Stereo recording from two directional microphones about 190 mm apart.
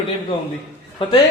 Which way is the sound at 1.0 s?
30° left (ahead or behind).